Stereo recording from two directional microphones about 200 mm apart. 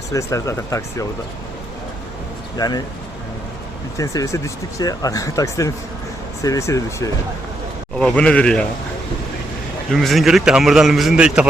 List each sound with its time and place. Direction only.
0.1 s speech: 15° left (ahead or behind)
2.6 s speech: 20° left (ahead or behind)
3.9 s speech: 15° left (ahead or behind)
7.9 s a man's voice: 5° left (ahead or behind)
9.9 s a man's voice: centre (ahead or behind)